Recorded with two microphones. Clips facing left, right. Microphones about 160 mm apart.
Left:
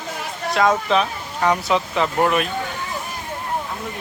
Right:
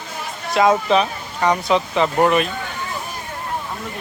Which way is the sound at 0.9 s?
Centre (ahead or behind).